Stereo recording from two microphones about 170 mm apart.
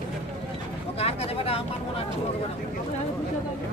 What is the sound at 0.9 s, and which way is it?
Speech, 35° left (ahead or behind).